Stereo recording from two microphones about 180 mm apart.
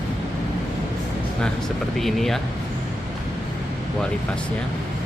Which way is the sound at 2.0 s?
Centre (ahead or behind).